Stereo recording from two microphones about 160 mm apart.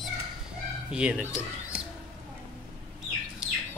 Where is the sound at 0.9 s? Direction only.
5° right (ahead or behind).